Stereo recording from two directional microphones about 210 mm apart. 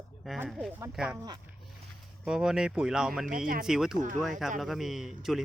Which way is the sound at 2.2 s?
Centre (ahead or behind).